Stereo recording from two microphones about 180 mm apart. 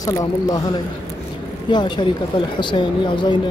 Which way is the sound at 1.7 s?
25° left (ahead or behind).